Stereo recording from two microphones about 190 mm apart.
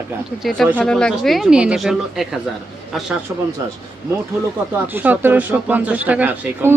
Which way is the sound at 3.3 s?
10° right (ahead or behind).